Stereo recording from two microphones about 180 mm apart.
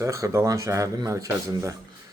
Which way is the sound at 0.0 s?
15° right (ahead or behind).